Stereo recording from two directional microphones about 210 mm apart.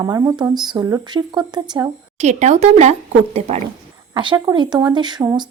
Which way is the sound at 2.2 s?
35° right (ahead or behind).